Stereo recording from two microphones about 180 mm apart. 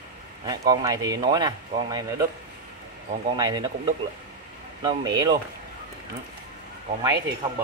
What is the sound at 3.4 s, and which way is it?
Speech, 25° right (ahead or behind).